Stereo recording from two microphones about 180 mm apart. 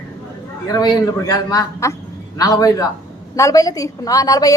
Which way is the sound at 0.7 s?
20° left (ahead or behind).